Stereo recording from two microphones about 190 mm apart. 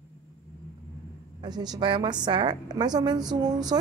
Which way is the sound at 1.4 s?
20° right (ahead or behind).